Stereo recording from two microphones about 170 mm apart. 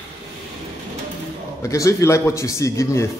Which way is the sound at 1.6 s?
20° left (ahead or behind).